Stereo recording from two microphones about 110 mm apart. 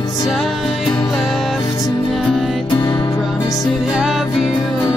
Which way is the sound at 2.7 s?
40° left (ahead or behind).